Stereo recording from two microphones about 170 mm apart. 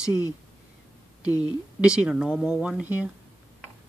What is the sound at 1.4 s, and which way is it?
Speech, 5° right (ahead or behind).